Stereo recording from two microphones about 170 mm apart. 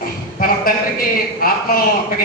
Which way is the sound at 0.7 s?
60° left (ahead or behind).